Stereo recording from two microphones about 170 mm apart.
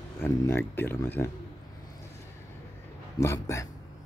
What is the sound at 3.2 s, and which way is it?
Speech, 15° left (ahead or behind).